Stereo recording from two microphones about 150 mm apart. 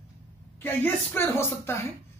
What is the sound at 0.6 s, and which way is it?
Speech, 15° left (ahead or behind).